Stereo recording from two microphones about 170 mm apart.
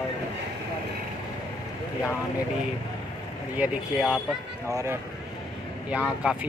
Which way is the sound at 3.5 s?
5° right (ahead or behind).